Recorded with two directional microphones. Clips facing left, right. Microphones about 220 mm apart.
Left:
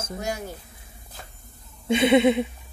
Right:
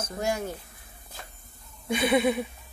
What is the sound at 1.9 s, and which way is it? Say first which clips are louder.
Speech: left 6 dB; 25° left (ahead or behind).